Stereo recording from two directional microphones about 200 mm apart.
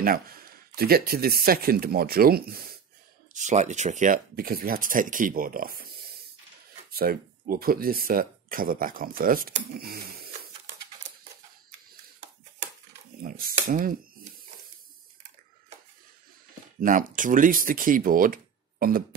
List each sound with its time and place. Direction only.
0.0 s speech: 45° right (ahead or behind)
3.3 s speech: 35° right (ahead or behind)
13.2 s speech: 45° right (ahead or behind)
16.8 s speech: 40° right (ahead or behind)